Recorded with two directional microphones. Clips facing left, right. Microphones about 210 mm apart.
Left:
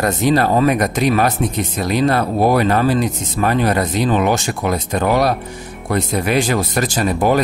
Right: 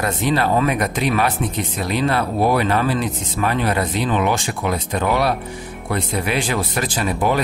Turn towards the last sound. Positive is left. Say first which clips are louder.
# left 4 dB
turn(degrees=45)  # may be behind; listen again after turning